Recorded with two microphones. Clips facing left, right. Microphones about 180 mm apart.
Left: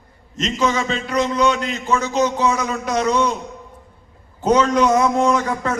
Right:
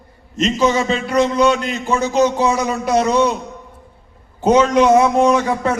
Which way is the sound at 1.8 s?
30° right (ahead or behind).